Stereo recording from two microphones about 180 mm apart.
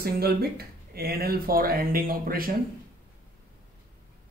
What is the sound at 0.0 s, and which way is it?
Speech, 60° right (ahead or behind).